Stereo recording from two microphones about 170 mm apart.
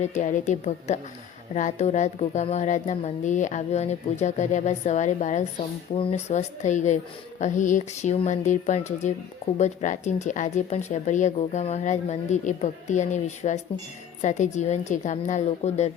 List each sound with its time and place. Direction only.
0.0 s speech: 45° left (ahead or behind)